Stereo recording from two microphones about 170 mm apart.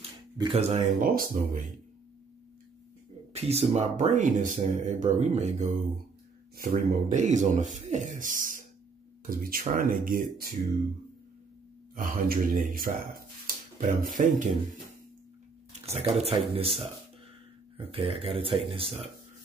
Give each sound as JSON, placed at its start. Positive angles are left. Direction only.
{"t": 0.4, "sound": "speech", "side_deg": -35}
{"t": 1.0, "sound": "speech", "side_deg": -55}
{"t": 3.3, "sound": "speech", "side_deg": -40}
{"t": 6.9, "sound": "speech", "side_deg": -50}
{"t": 11.9, "sound": "speech", "side_deg": -55}
{"t": 15.8, "sound": "speech", "side_deg": -35}